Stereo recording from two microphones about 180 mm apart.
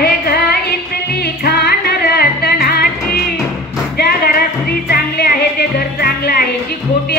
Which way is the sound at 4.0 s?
60° left (ahead or behind).